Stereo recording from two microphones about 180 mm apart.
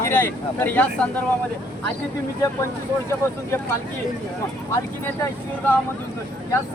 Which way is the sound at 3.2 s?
15° left (ahead or behind).